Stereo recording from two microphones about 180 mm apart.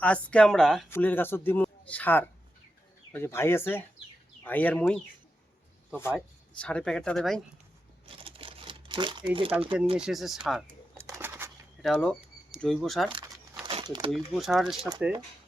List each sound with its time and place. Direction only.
0.0 s speech: 5° left (ahead or behind)
6.6 s speech: 5° left (ahead or behind)
8.0 s crumpling: 30° right (ahead or behind)
10.0 s speech: centre (ahead or behind)
10.9 s bird: 15° right (ahead or behind)
11.8 s speech: centre (ahead or behind)
13.1 s crumpling: 30° right (ahead or behind)
14.1 s speech: centre (ahead or behind)
14.8 s speech: 25° right (ahead or behind)